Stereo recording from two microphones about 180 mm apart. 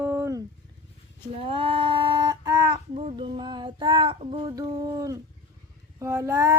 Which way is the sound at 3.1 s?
25° right (ahead or behind).